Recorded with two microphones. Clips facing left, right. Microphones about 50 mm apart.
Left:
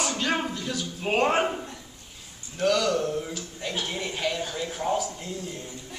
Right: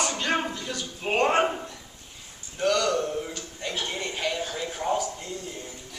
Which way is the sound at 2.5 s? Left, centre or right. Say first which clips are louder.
Even; centre.